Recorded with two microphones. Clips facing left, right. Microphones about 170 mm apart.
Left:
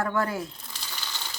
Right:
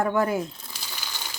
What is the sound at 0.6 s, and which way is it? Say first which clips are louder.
Crumpling: right 1 dB; 10° right (ahead or behind).